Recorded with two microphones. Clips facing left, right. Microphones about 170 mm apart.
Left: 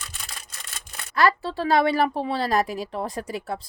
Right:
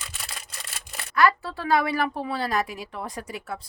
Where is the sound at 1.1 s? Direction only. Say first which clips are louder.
Even; 30° left (ahead or behind).